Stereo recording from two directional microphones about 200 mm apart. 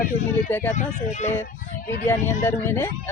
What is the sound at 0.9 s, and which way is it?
Speech, 35° left (ahead or behind).